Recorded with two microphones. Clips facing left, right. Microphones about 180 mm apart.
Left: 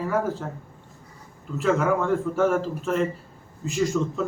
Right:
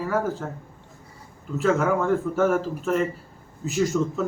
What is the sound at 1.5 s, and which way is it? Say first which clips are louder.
A man's voice: right 1 dB; centre (ahead or behind).